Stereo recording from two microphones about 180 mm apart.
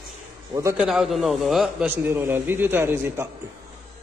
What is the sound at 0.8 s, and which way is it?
A man's voice, centre (ahead or behind).